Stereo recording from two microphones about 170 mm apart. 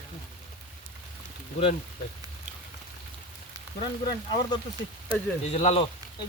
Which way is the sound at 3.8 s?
25° left (ahead or behind).